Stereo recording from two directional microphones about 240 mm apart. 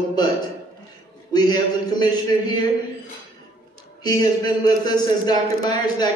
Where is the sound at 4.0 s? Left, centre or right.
Centre.